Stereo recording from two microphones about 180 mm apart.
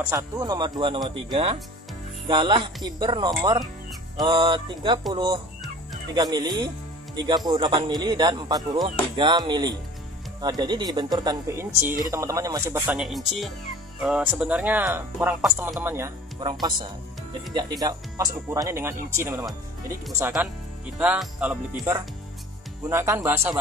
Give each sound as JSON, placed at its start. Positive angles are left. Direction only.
{"t": 0.1, "sound": "speech", "side_deg": -20}
{"t": 12.9, "sound": "speech", "side_deg": 0}
{"t": 16.4, "sound": "speech", "side_deg": -25}